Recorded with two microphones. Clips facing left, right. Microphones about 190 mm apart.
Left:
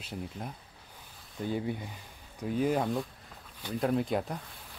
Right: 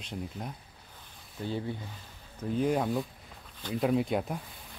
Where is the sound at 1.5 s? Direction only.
15° left (ahead or behind).